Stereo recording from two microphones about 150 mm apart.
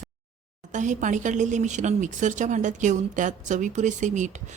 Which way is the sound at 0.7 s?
55° right (ahead or behind).